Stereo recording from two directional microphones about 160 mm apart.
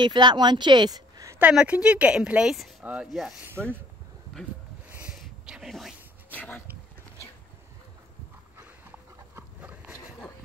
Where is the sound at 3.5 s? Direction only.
15° right (ahead or behind).